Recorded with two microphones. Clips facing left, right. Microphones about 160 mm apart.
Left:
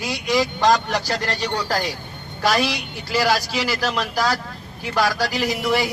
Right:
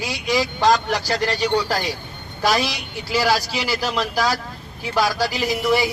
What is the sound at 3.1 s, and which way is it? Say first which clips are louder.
Speech: even; 10° right (ahead or behind).